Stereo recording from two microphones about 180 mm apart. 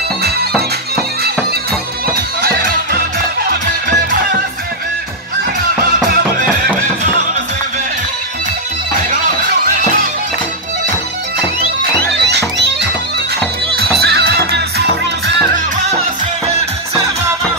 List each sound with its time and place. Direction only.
0.6 s music: 60° right (ahead or behind)
12.2 s music: 70° right (ahead or behind)
14.0 s music: 60° right (ahead or behind)